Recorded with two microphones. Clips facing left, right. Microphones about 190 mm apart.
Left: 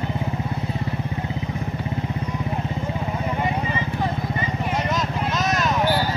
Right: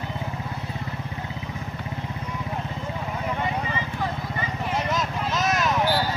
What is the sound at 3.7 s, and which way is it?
Vehicle, 20° left (ahead or behind).